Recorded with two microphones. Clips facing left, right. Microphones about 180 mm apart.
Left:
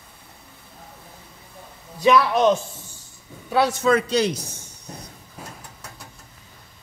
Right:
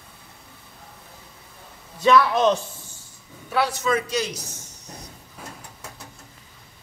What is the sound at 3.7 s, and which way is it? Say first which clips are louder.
Speech: left 5 dB; 60° left (ahead or behind).